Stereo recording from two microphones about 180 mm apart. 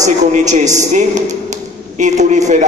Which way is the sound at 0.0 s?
40° right (ahead or behind).